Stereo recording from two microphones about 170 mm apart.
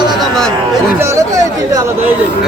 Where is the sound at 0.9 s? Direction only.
20° right (ahead or behind).